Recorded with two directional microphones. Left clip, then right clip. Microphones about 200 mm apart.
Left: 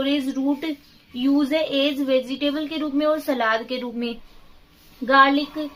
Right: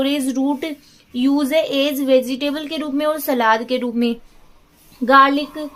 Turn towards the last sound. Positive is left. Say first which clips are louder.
# right 4 dB
turn(degrees=-45)  # may be behind; listen again after turning